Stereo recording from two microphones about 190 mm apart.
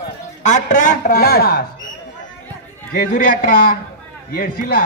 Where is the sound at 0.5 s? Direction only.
40° left (ahead or behind).